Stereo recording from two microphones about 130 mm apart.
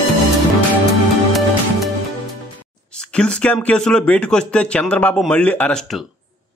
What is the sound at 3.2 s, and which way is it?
A man's voice, 10° left (ahead or behind).